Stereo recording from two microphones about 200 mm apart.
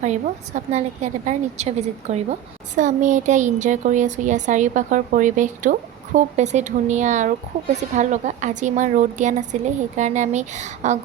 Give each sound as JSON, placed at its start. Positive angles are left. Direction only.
{"t": 0.0, "sound": "speech", "side_deg": -35}